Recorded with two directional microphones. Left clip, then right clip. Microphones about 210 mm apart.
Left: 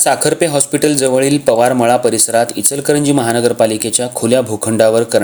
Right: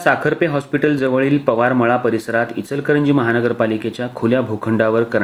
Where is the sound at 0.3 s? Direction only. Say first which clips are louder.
Left 4 dB; 50° left (ahead or behind).